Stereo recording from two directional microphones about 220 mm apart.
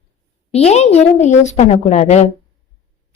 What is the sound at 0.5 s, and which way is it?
A woman's voice, 30° left (ahead or behind).